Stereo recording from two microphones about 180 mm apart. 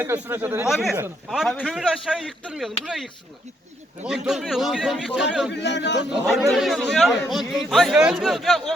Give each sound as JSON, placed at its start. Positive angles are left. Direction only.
{"t": 0.0, "sound": "a man's voice", "side_deg": -10}
{"t": 5.5, "sound": "a man's voice", "side_deg": 75}
{"t": 6.5, "sound": "a man's voice", "side_deg": 0}